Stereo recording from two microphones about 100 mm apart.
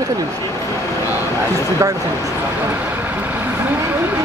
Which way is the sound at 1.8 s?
30° right (ahead or behind).